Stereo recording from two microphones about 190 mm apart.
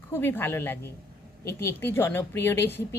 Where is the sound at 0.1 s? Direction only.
10° left (ahead or behind).